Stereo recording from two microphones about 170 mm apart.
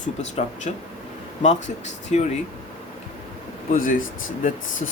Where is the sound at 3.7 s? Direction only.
50° left (ahead or behind).